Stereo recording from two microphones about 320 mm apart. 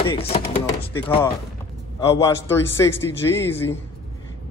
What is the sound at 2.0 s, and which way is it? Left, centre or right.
A man's voice, centre.